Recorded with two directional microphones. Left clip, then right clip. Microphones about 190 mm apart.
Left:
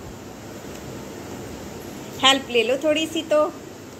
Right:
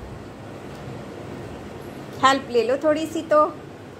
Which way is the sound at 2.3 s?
30° right (ahead or behind).